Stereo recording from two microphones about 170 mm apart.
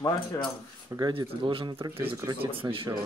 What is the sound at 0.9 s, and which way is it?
Speech, 25° right (ahead or behind).